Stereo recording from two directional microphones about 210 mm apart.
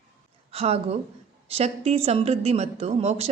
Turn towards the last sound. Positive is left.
turn(degrees=-30)  # may be behind; listen again after turning